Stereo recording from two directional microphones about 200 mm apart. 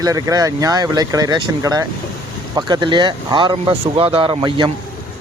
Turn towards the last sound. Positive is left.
turn(degrees=-25)  # may be behind; listen again after turning